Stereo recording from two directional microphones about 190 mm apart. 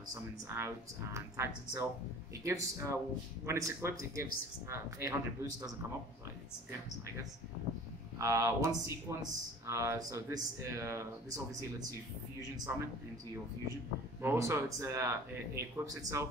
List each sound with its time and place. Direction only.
0.6 s speech: 15° right (ahead or behind)
8.2 s speech: 15° right (ahead or behind)
14.2 s speech: 15° right (ahead or behind)